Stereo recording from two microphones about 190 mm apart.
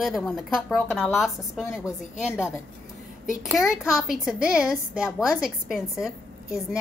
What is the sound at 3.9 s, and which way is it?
A woman's voice, 5° right (ahead or behind).